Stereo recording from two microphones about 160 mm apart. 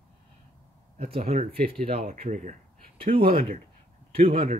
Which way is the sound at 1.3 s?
60° right (ahead or behind).